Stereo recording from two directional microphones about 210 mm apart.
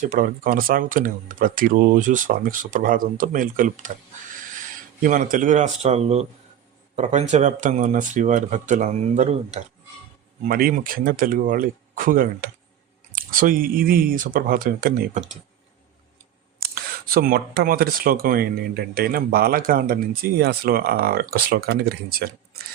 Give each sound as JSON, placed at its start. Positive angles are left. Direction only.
{"t": 0.0, "sound": "speech", "side_deg": -40}
{"t": 4.9, "sound": "speech", "side_deg": -40}
{"t": 16.6, "sound": "speech", "side_deg": -45}